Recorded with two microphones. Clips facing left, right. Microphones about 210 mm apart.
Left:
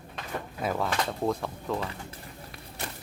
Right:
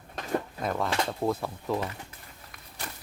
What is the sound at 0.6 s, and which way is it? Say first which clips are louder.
Speech: left 5 dB; 5° left (ahead or behind).